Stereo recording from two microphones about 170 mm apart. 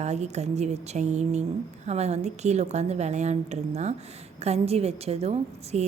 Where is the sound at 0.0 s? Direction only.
40° right (ahead or behind).